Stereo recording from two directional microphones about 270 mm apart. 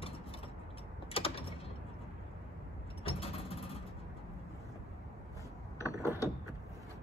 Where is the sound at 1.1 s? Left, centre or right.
Left.